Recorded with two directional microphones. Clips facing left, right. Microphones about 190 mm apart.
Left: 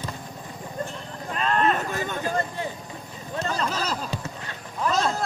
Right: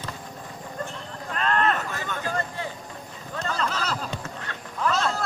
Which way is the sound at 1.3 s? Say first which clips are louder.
Left 1 dB; 15° left (ahead or behind).